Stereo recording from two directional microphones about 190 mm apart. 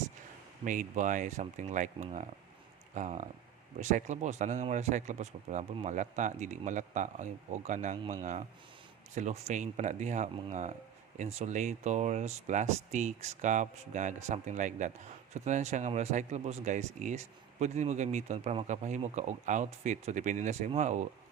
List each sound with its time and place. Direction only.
0.6 s speech: 40° right (ahead or behind)